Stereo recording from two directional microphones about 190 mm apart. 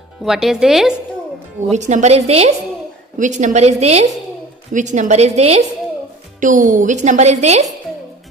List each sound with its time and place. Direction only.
0.2 s speech: centre (ahead or behind)
1.7 s a woman's voice: 40° right (ahead or behind)